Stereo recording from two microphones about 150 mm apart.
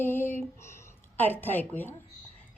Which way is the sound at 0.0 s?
15° left (ahead or behind).